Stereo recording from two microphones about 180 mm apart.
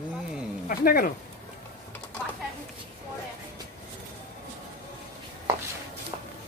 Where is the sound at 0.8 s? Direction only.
55° left (ahead or behind).